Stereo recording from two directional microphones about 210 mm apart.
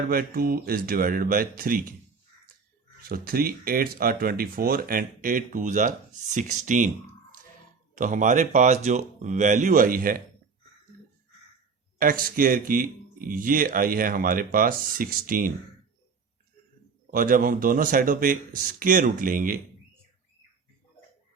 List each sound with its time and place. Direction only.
0.1 s speech: 45° right (ahead or behind)
3.0 s speech: 45° right (ahead or behind)
7.9 s speech: 35° right (ahead or behind)
11.9 s speech: 40° right (ahead or behind)
17.1 s speech: 40° right (ahead or behind)